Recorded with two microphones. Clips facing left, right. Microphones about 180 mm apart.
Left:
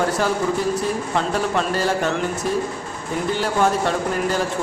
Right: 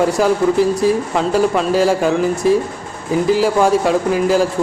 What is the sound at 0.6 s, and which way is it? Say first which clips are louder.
Speech: right 8 dB; 75° right (ahead or behind).